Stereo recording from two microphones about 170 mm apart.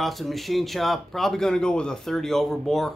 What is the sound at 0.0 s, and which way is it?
A man's voice, centre (ahead or behind).